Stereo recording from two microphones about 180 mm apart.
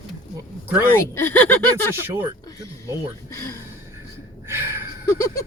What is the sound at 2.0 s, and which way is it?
Speech, 10° right (ahead or behind).